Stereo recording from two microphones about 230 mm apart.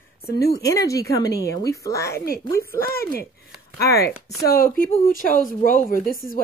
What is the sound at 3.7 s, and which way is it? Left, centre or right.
A woman's voice, left.